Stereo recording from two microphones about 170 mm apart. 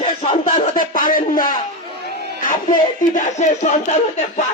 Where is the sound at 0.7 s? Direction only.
55° left (ahead or behind).